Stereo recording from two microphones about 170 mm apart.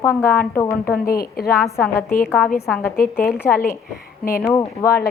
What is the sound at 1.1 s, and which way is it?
Speech, 60° left (ahead or behind).